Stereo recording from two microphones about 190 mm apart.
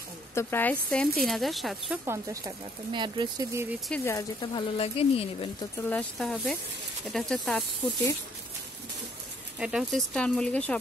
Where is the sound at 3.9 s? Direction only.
15° left (ahead or behind); by 5.5 s 30° left (ahead or behind).